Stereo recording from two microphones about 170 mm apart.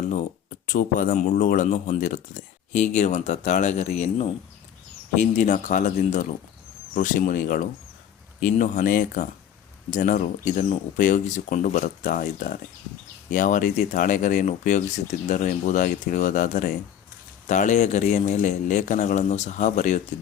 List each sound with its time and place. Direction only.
0.7 s speech: 55° left (ahead or behind)